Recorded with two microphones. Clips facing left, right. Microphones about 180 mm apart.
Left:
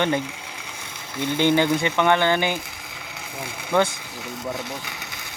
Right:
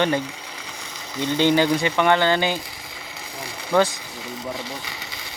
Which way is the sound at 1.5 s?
25° left (ahead or behind).